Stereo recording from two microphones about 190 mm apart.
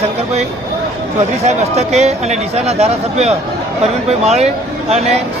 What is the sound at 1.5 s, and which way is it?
Speech, 35° right (ahead or behind).